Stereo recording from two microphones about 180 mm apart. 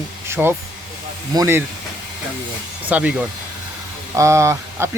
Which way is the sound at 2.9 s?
5° right (ahead or behind).